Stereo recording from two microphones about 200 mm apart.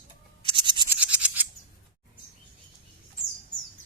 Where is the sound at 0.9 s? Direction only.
10° right (ahead or behind).